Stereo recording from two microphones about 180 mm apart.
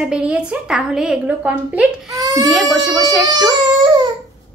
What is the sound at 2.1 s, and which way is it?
Baby cry, 20° right (ahead or behind).